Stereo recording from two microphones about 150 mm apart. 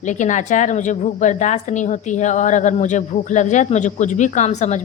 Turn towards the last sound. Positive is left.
turn(degrees=50)  # may be behind; listen again after turning